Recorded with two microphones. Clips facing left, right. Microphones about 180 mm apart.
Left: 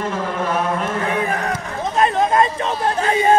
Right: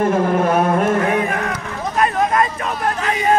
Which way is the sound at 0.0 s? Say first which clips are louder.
Right 7 dB; 50° right (ahead or behind).